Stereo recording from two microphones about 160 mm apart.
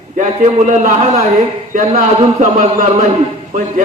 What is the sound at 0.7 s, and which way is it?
A man's voice, 50° right (ahead or behind).